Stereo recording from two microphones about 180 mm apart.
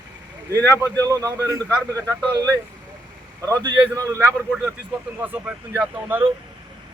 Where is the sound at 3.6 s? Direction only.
20° right (ahead or behind); by 6.1 s 5° right (ahead or behind).